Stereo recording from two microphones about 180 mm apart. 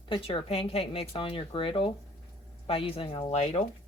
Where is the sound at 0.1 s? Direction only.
30° left (ahead or behind).